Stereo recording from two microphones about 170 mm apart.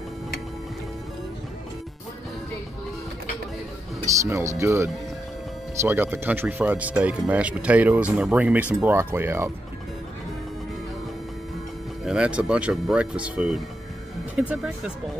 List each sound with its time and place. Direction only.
4.1 s speech: 20° right (ahead or behind)
12.0 s speech: 5° right (ahead or behind)